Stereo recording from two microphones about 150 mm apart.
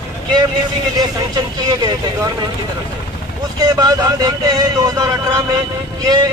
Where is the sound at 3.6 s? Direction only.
25° right (ahead or behind).